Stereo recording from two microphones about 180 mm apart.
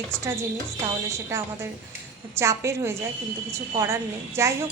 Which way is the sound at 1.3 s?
15° right (ahead or behind).